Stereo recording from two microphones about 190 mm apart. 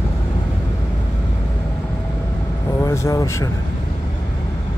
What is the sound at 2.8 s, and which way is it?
Speech, 15° left (ahead or behind).